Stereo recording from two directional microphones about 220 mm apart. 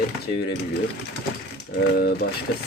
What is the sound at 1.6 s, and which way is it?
Speech, 45° left (ahead or behind).